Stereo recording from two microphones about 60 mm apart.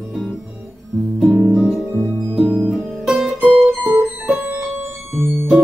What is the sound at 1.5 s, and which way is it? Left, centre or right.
Music, centre.